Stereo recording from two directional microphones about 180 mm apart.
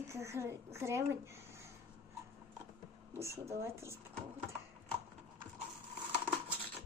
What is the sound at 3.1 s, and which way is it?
Speech, 15° right (ahead or behind).